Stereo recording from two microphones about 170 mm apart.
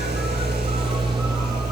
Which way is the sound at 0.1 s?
70° right (ahead or behind).